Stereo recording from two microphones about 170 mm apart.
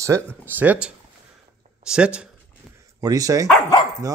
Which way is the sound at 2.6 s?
Centre (ahead or behind).